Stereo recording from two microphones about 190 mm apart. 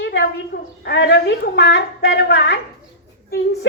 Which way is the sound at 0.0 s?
65° left (ahead or behind).